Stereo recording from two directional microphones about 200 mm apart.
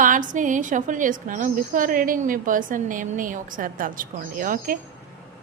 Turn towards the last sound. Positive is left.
turn(degrees=-45)  # may be behind; listen again after turning